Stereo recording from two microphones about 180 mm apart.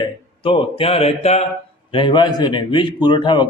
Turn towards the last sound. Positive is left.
turn(degrees=25)  # may be behind; listen again after turning